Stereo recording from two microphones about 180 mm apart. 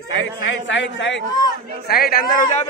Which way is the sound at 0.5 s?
90° left.